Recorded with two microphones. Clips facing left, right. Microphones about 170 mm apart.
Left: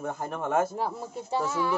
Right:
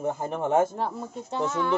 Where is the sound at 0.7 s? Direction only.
5° left (ahead or behind).